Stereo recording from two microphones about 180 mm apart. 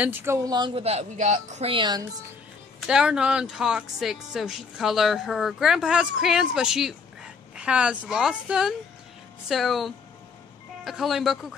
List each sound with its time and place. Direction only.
0.0 s speech: 10° right (ahead or behind)
0.7 s a woman's voice: 35° right (ahead or behind)
2.9 s speech: 5° right (ahead or behind)